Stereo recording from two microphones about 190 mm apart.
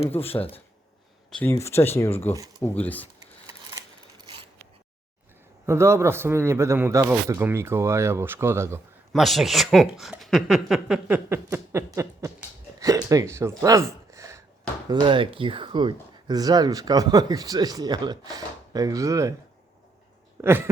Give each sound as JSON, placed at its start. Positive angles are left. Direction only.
{"t": 0.1, "sound": "speech", "side_deg": 15}
{"t": 1.4, "sound": "speech", "side_deg": 15}
{"t": 3.2, "sound": "a sound", "side_deg": -20}
{"t": 5.6, "sound": "a man's voice", "side_deg": -15}
{"t": 9.1, "sound": "a man's voice", "side_deg": 0}
{"t": 13.6, "sound": "a sound", "side_deg": -15}
{"t": 14.8, "sound": "speech", "side_deg": -25}
{"t": 20.4, "sound": "a man's voice", "side_deg": -10}